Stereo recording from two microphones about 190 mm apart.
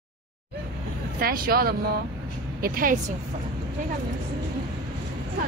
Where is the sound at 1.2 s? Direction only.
50° right (ahead or behind).